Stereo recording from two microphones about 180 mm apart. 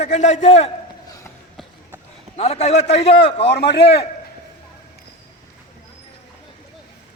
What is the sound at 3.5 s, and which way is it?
Speech, 70° left (ahead or behind).